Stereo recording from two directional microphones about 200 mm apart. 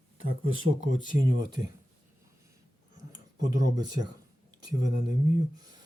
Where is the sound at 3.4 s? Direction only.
20° right (ahead or behind).